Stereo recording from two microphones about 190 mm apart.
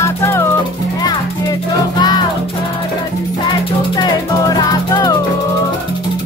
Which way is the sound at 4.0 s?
20° left (ahead or behind).